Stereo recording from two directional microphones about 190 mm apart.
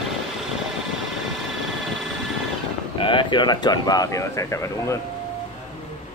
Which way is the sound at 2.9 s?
25° left (ahead or behind).